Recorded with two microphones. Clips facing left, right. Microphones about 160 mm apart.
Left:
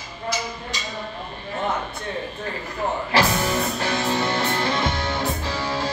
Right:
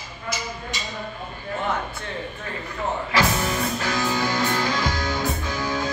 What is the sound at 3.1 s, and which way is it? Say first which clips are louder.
Music: left 2 dB; 30° left (ahead or behind).